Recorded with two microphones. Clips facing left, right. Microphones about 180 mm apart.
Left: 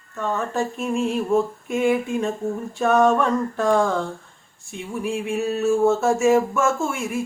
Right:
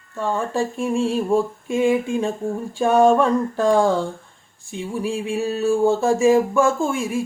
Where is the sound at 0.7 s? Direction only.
30° right (ahead or behind).